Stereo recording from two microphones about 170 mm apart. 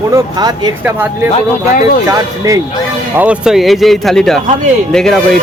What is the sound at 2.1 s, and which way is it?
Speech, 20° right (ahead or behind).